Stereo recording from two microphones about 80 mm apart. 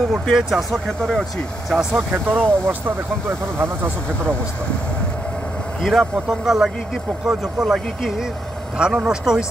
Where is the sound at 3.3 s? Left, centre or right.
Right.